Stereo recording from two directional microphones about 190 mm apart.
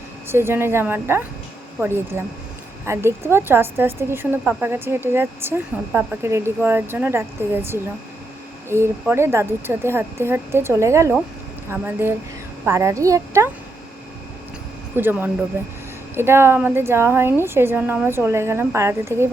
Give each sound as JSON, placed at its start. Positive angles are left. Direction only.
{"t": 0.3, "sound": "a woman's voice", "side_deg": -10}
{"t": 14.9, "sound": "a woman's voice", "side_deg": -10}